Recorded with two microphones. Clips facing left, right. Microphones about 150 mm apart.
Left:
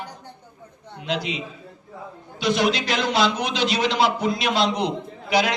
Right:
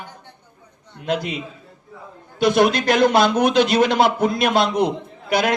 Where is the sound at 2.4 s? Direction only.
55° right (ahead or behind).